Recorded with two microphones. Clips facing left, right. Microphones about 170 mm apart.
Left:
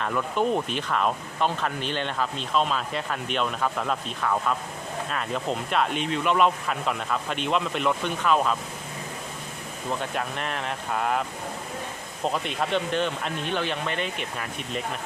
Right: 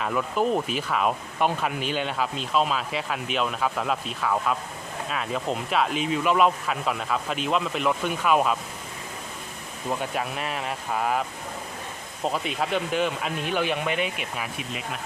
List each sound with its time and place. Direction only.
0.0 s speech: 5° right (ahead or behind)
10.0 s speech: 5° right (ahead or behind)
12.3 s speech: 5° right (ahead or behind)